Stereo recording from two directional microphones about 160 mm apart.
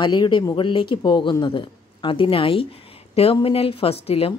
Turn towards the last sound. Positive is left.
turn(degrees=40)  # may be behind; listen again after turning